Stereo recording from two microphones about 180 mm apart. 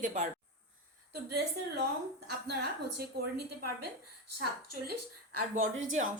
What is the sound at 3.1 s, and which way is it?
Speech, 60° right (ahead or behind).